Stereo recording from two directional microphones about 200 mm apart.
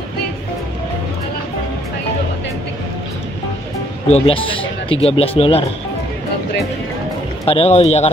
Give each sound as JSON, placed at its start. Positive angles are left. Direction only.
{"t": 4.1, "sound": "speech", "side_deg": 25}
{"t": 7.4, "sound": "speech", "side_deg": 30}